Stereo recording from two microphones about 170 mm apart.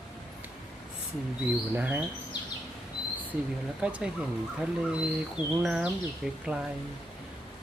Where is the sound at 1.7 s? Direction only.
10° right (ahead or behind).